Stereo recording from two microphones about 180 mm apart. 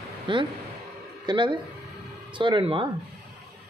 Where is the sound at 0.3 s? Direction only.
25° right (ahead or behind).